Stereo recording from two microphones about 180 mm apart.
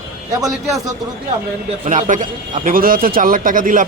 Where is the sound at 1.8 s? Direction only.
40° right (ahead or behind).